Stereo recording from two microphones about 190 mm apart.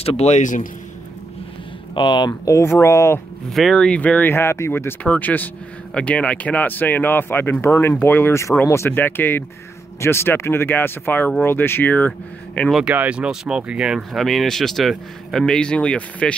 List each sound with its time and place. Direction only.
0.0 s a man's voice: 30° left (ahead or behind)
2.0 s speech: 25° left (ahead or behind)
3.4 s speech: centre (ahead or behind)